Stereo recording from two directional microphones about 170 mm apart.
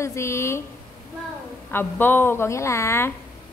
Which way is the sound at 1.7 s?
10° left (ahead or behind).